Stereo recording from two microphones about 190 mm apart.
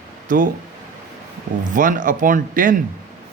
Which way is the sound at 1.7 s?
45° right (ahead or behind).